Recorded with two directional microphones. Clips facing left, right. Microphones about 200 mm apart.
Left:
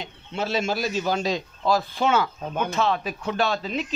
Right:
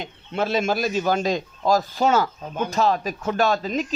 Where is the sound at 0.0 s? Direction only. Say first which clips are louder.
Right 4 dB; 55° right (ahead or behind).